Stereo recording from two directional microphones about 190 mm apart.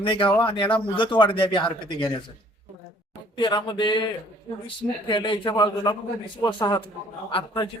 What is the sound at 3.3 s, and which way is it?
Speech, 25° left (ahead or behind).